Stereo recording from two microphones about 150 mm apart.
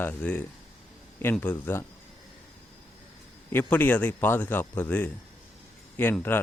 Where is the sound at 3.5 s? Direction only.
10° left (ahead or behind).